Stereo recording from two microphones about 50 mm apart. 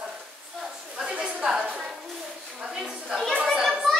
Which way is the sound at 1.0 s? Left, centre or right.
Centre.